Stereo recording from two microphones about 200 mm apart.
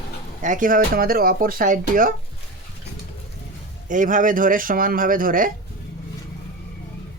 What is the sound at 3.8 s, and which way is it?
Speech, 40° right (ahead or behind).